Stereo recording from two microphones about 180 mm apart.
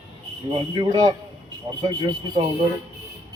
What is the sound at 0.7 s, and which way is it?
A man's voice, 20° right (ahead or behind).